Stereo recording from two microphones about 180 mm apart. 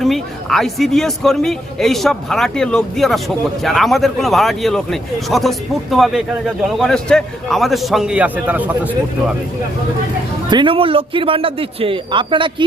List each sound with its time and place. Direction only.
0.0 s a man's voice: centre (ahead or behind)
10.5 s a man's voice: 30° right (ahead or behind)